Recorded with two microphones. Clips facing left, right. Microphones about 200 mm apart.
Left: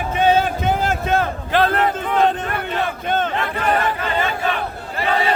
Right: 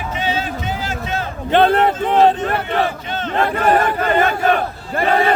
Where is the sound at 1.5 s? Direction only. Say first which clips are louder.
Right 6 dB; 30° right (ahead or behind).